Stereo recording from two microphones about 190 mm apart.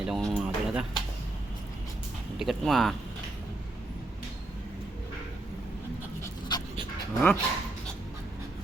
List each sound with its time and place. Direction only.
0.0 s speech: centre (ahead or behind)
2.4 s speech: centre (ahead or behind)
6.5 s dog: 20° left (ahead or behind)
7.1 s speech: 10° left (ahead or behind)